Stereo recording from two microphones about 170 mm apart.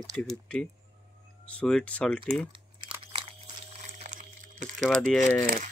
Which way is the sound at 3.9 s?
45° right (ahead or behind).